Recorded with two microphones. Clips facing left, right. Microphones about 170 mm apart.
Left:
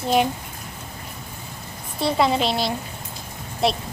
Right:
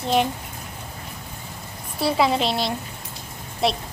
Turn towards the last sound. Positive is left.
turn(degrees=0)  # may be behind; listen again after turning